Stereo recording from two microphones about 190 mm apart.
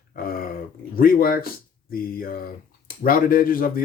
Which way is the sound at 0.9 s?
50° left (ahead or behind).